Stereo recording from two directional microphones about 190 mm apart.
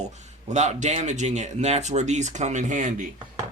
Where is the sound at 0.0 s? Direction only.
35° right (ahead or behind).